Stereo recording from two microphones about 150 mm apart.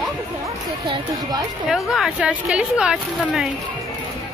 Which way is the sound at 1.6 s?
Centre (ahead or behind).